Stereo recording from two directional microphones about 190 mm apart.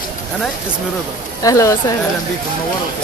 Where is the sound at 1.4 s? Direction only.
15° left (ahead or behind).